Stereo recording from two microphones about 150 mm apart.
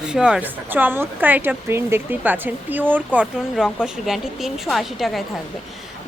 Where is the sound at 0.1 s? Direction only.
5° right (ahead or behind).